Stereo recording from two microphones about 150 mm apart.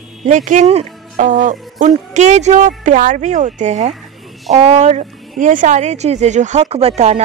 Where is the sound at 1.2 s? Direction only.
60° right (ahead or behind).